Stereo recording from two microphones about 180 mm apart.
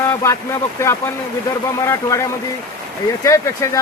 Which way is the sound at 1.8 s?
15° left (ahead or behind).